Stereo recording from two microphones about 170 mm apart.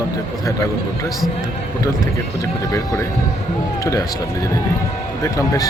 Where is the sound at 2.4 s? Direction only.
20° left (ahead or behind).